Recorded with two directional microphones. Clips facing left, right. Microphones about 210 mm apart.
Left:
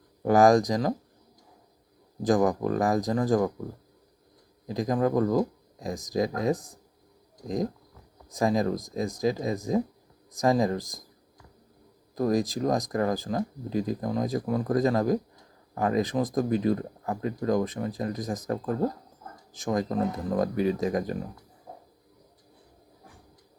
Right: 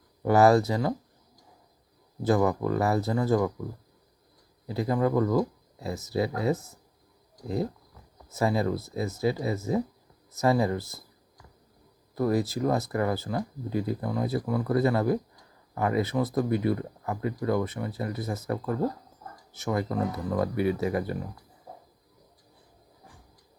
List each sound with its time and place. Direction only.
0.2 s speech: 15° left (ahead or behind)
2.2 s speech: 15° left (ahead or behind)
4.6 s speech: 15° left (ahead or behind)
12.1 s speech: 15° left (ahead or behind)
20.1 s speech: 15° left (ahead or behind)